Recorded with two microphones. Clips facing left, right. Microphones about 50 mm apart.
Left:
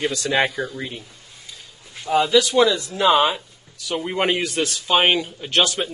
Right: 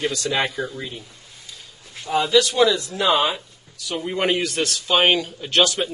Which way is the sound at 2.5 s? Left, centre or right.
Left.